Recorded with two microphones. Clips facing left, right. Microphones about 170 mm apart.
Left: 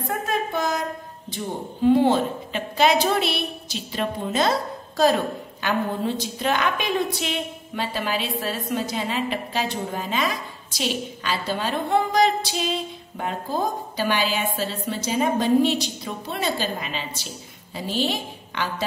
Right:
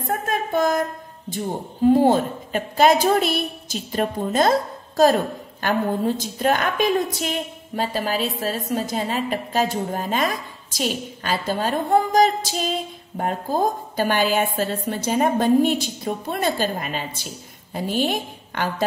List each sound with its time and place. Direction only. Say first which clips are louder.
0.0 s speech: right 1 dB; 50° right (ahead or behind)
1.9 s a woman's voice: right 2 dB; 45° right (ahead or behind)